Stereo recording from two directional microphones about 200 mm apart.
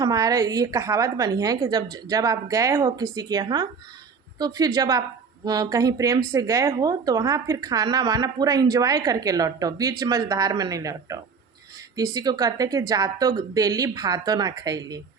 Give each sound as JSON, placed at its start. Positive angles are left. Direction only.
{"t": 0.0, "sound": "speech", "side_deg": -20}